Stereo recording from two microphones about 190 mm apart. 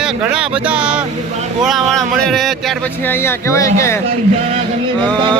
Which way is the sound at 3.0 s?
10° left (ahead or behind).